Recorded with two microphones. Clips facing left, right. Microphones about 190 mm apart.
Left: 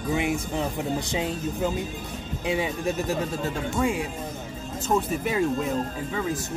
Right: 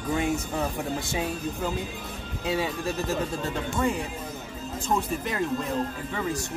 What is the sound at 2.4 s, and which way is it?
Speech, 20° left (ahead or behind).